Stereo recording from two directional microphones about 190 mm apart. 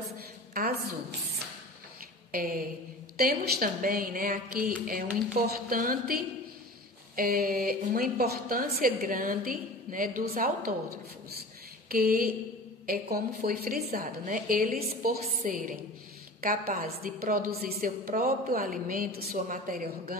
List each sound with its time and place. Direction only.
2.3 s a woman's voice: 50° right (ahead or behind)
7.2 s a woman's voice: 50° right (ahead or behind)
11.9 s a woman's voice: 50° right (ahead or behind)